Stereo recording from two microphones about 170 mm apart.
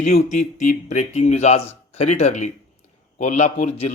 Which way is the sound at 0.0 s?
45° left (ahead or behind).